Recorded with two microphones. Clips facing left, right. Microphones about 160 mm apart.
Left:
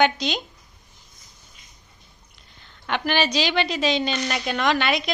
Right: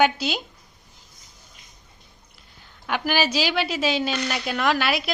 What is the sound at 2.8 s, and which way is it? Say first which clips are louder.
A woman's voice: even; 5° right (ahead or behind).